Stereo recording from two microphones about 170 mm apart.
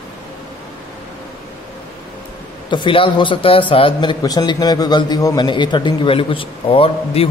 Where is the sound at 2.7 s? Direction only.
30° left (ahead or behind).